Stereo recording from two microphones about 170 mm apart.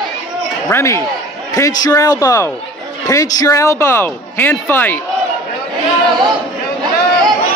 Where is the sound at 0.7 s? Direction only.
15° left (ahead or behind).